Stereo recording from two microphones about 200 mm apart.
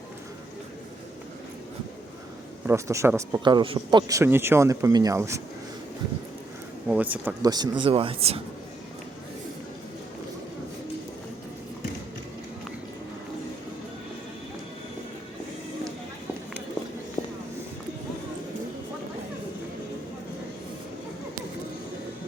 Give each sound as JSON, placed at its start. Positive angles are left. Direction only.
{"t": 2.6, "sound": "a man's voice", "side_deg": -15}
{"t": 6.8, "sound": "a man's voice", "side_deg": -5}
{"t": 7.5, "sound": "speech", "side_deg": -20}
{"t": 17.2, "sound": "a sound", "side_deg": 30}